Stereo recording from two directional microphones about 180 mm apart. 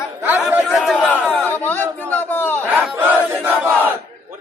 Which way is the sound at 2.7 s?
10° right (ahead or behind).